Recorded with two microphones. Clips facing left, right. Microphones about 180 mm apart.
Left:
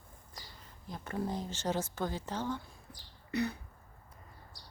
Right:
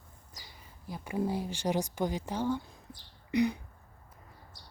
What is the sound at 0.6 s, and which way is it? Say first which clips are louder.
Speech: right 3 dB; 10° right (ahead or behind).